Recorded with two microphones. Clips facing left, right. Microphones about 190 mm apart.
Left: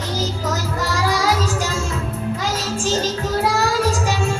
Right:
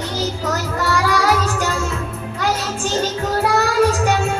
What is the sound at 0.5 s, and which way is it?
Music, 60° right (ahead or behind).